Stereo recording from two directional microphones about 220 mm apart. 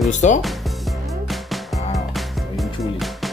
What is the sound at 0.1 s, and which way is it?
Speech, 35° left (ahead or behind).